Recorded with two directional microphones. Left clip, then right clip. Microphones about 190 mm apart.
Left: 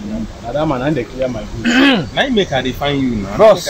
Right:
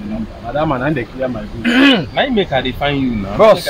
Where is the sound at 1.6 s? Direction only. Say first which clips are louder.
Right 1 dB; 15° right (ahead or behind).